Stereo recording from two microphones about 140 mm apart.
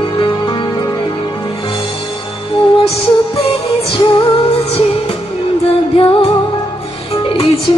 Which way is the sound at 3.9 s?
40° left (ahead or behind).